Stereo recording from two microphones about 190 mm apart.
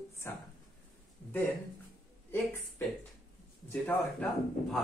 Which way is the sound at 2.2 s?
15° left (ahead or behind).